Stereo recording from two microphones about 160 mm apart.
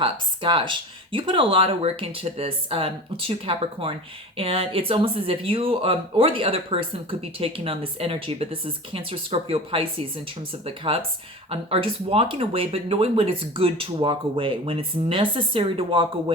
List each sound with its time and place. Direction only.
0.0 s speech: 30° right (ahead or behind)